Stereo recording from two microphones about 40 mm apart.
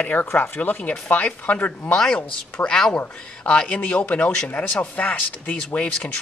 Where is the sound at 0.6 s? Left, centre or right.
Left.